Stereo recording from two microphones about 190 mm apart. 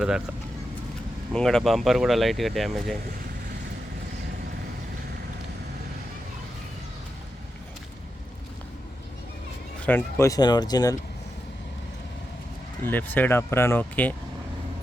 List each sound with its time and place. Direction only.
1.3 s speech: 5° left (ahead or behind)
9.8 s speech: 10° left (ahead or behind)
12.8 s speech: 10° left (ahead or behind)